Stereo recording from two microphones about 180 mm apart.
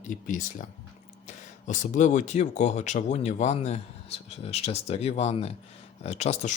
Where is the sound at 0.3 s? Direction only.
50° left (ahead or behind).